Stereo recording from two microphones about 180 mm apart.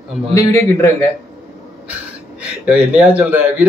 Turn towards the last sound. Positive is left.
turn(degrees=-10)  # may be behind; listen again after turning